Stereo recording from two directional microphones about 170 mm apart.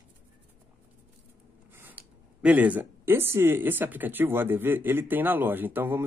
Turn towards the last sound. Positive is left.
turn(degrees=-10)  # may be behind; listen again after turning